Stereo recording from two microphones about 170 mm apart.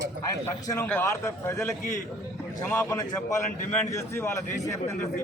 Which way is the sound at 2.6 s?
15° left (ahead or behind).